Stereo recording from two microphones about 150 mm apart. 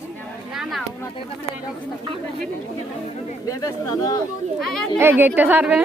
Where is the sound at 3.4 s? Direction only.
25° left (ahead or behind).